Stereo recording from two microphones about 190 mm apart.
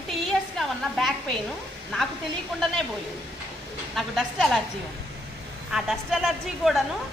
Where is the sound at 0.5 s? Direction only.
Centre (ahead or behind).